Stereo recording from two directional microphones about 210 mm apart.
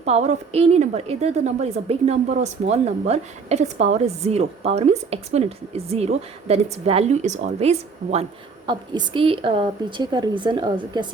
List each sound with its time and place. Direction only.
0.0 s a woman's voice: 30° right (ahead or behind)